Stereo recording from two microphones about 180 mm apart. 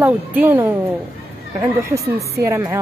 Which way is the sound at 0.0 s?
10° right (ahead or behind).